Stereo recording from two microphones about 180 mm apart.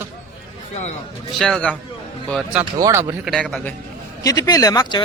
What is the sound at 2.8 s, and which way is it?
Speech, 20° right (ahead or behind).